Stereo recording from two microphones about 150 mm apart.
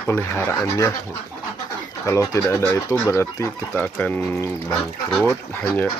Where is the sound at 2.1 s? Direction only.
20° left (ahead or behind).